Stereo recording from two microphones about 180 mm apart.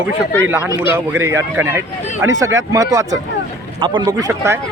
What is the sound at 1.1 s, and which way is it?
Speech, 15° right (ahead or behind).